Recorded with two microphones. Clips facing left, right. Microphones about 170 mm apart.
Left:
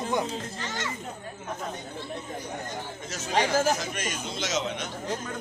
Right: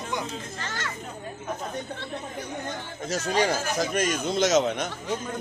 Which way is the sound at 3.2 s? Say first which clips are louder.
Left 2 dB; 40° right (ahead or behind).